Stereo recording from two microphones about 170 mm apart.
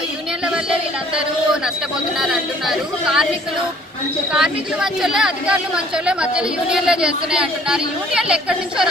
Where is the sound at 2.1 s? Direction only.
Centre (ahead or behind).